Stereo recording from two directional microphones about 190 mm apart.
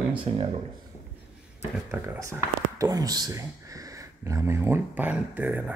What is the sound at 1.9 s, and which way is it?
Speech, 15° right (ahead or behind).